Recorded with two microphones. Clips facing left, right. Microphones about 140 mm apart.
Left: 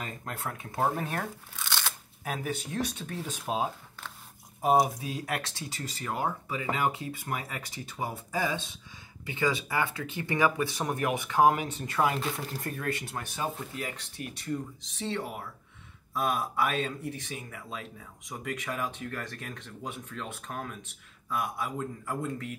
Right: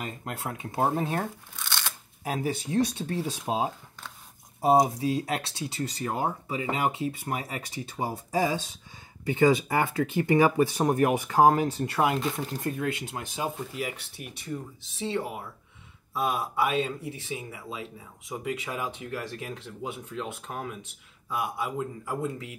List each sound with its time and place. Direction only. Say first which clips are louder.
0.2 s speech: right 3 dB; 25° right (ahead or behind)
1.5 s shuffling cards: even; 5° left (ahead or behind)
2.2 s speech: right 4 dB; 30° right (ahead or behind)
5.0 s speech: right 6 dB; 25° right (ahead or behind)
9.3 s speech: right 7 dB; 45° right (ahead or behind)
12.1 s speech: right 4 dB; centre (ahead or behind)
12.5 s speech: right 4 dB; 20° right (ahead or behind)
13.7 s speech: right 3 dB; 5° right (ahead or behind)